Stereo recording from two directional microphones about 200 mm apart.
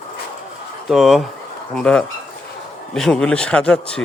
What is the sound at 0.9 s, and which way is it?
A man's voice, centre (ahead or behind).